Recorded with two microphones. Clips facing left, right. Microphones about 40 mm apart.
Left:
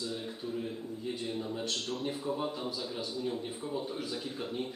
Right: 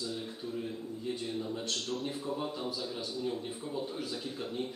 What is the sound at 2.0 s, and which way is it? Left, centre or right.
A man's voice, centre.